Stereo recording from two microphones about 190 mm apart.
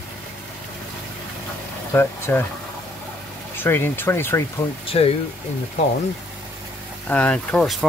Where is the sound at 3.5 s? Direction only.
10° left (ahead or behind).